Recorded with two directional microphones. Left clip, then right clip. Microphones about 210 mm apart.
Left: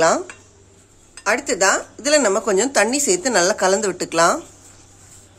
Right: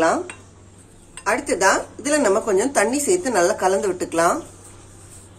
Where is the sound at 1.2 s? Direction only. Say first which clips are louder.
Left 1 dB; 45° left (ahead or behind).